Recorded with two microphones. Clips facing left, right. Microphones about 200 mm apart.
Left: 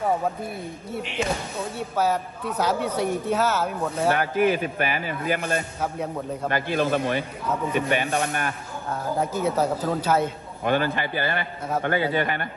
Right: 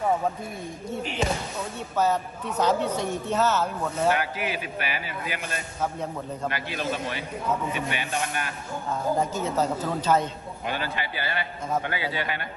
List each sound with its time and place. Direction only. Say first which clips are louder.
2.0 s a man's voice: even; 10° left (ahead or behind)
4.2 s a man's voice: left 8 dB; 50° left (ahead or behind)
9.3 s a man's voice: left 3 dB; 10° left (ahead or behind)
10.6 s a man's voice: left 8 dB; 50° left (ahead or behind)